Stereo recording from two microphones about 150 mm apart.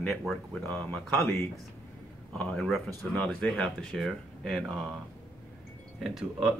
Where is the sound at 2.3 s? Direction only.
5° left (ahead or behind).